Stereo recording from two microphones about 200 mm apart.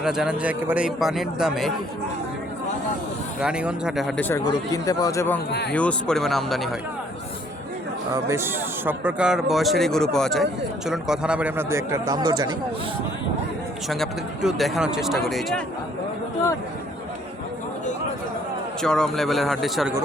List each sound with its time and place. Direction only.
0.0 s a man's voice: centre (ahead or behind)
3.4 s a man's voice: 5° right (ahead or behind)
4.3 s speech: 15° left (ahead or behind)
5.5 s speech: 55° left (ahead or behind)
5.7 s a man's voice: 5° left (ahead or behind)
8.1 s a man's voice: 15° right (ahead or behind)
13.8 s a man's voice: centre (ahead or behind)
18.8 s a man's voice: 5° left (ahead or behind)